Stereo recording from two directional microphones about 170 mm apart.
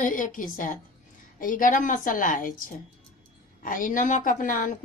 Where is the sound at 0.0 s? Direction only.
50° left (ahead or behind).